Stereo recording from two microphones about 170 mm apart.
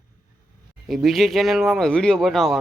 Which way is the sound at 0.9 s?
Centre (ahead or behind).